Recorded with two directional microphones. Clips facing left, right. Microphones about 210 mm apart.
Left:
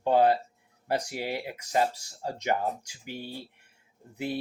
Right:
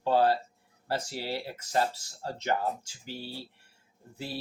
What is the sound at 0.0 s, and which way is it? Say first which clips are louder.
Speech: left 2 dB; 20° left (ahead or behind).